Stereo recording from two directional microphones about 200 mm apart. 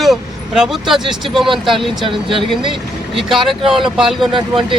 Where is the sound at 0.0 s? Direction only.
Centre (ahead or behind).